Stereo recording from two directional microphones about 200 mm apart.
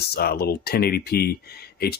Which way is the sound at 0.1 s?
50° left (ahead or behind).